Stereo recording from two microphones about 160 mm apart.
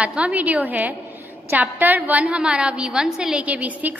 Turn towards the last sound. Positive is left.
turn(degrees=-10)  # may be behind; listen again after turning